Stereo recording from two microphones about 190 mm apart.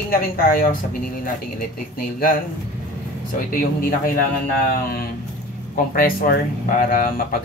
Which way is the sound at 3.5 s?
45° left (ahead or behind).